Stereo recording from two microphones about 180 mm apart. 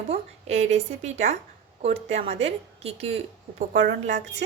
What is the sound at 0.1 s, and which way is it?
A woman's voice, 35° right (ahead or behind).